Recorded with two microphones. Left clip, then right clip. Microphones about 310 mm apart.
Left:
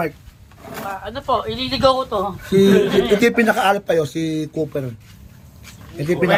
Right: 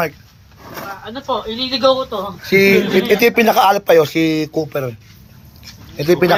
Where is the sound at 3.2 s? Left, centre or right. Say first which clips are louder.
Right 4 dB; right.